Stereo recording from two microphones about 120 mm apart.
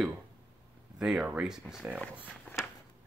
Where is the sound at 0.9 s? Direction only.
5° right (ahead or behind).